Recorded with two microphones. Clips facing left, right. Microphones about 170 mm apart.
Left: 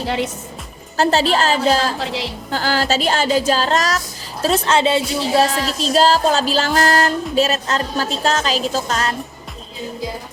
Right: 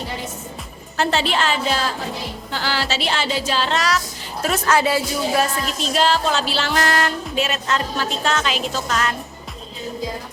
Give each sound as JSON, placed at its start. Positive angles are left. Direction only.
{"t": 0.9, "sound": "music", "side_deg": 40}
{"t": 4.4, "sound": "speech", "side_deg": 25}
{"t": 5.8, "sound": "music", "side_deg": 35}